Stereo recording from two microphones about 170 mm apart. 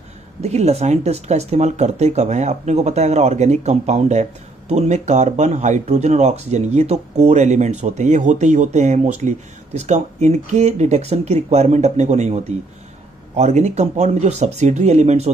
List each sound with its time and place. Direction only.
0.4 s speech: 40° right (ahead or behind)